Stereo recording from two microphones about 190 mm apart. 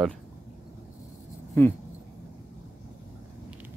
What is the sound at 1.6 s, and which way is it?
Speech, 10° left (ahead or behind).